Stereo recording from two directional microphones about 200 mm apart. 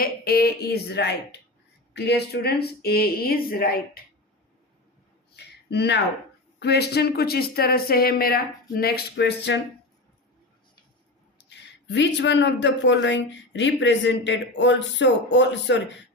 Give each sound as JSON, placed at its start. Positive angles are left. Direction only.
{"t": 0.0, "sound": "speech", "side_deg": 50}
{"t": 5.4, "sound": "a sound", "side_deg": 55}
{"t": 6.6, "sound": "speech", "side_deg": 55}
{"t": 11.4, "sound": "speech", "side_deg": 60}